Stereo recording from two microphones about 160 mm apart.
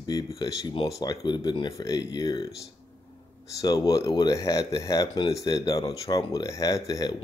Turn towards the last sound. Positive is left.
turn(degrees=20)  # may be behind; listen again after turning